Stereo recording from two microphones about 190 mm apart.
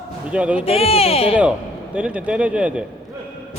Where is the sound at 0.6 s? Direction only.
30° left (ahead or behind).